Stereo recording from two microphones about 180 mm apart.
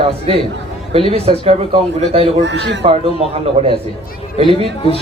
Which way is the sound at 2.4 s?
80° right.